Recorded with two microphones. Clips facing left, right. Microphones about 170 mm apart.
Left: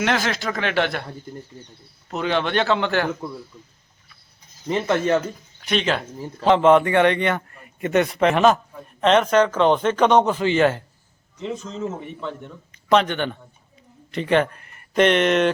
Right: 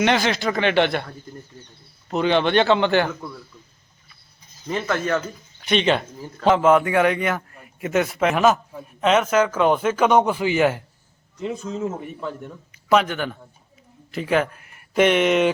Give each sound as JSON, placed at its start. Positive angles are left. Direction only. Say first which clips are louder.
{"t": 0.0, "sound": "a man's voice", "louder": "right 3 dB", "side_deg": 0}
{"t": 2.1, "sound": "a man's voice", "louder": "right 4 dB", "side_deg": 0}
{"t": 3.1, "sound": "a man's voice", "louder": "left 4 dB", "side_deg": 15}
{"t": 4.7, "sound": "speech", "louder": "left 3 dB", "side_deg": 25}
{"t": 5.6, "sound": "a man's voice", "louder": "right 3 dB", "side_deg": 0}
{"t": 6.1, "sound": "speech", "louder": "left 3 dB", "side_deg": 25}
{"t": 6.4, "sound": "a man's voice", "louder": "left 1 dB", "side_deg": 0}